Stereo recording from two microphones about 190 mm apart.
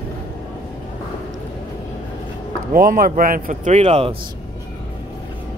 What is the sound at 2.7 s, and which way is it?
Speech, 50° right (ahead or behind).